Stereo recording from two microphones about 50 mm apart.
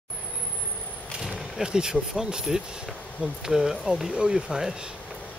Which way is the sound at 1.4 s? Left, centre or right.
Centre.